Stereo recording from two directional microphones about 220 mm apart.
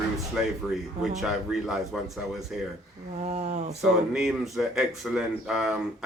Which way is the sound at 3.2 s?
30° right (ahead or behind).